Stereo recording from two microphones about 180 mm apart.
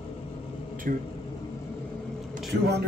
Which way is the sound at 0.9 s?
50° right (ahead or behind).